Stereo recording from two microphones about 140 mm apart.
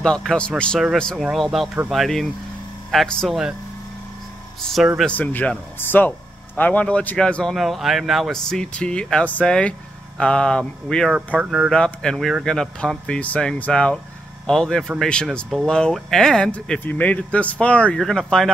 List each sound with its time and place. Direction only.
0.0 s speech: 5° left (ahead or behind)
5.0 s speech: 10° left (ahead or behind); by 11.7 s 5° right (ahead or behind)
11.7 s speech: 5° left (ahead or behind)